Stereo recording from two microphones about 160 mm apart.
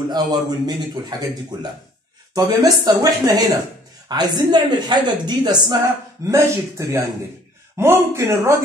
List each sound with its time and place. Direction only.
0.1 s a woman's voice: 25° right (ahead or behind)
2.3 s a woman's voice: 25° right (ahead or behind)